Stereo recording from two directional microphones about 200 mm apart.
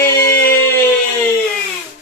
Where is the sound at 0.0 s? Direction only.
15° left (ahead or behind).